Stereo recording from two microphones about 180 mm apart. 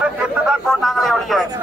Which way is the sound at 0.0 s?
5° right (ahead or behind).